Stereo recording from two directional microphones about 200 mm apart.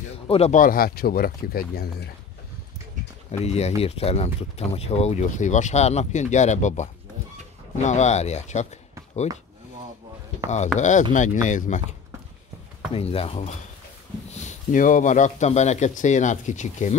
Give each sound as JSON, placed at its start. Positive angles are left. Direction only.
{"t": 0.3, "sound": "speech", "side_deg": 35}
{"t": 3.4, "sound": "speech", "side_deg": 30}
{"t": 10.8, "sound": "speech", "side_deg": 40}
{"t": 12.9, "sound": "speech", "side_deg": 30}